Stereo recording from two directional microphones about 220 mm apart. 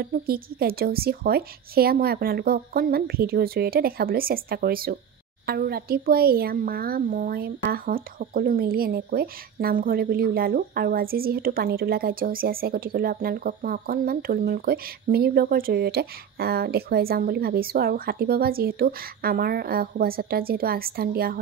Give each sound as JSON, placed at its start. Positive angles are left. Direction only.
{"t": 0.0, "sound": "a woman's voice", "side_deg": -45}